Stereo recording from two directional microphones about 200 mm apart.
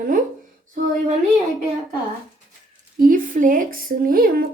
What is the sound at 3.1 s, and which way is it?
A woman's voice, 40° right (ahead or behind).